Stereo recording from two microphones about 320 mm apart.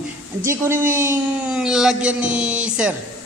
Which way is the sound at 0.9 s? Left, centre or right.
Centre.